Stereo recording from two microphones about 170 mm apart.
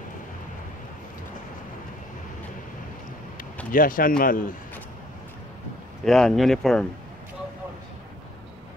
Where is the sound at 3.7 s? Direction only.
55° left (ahead or behind).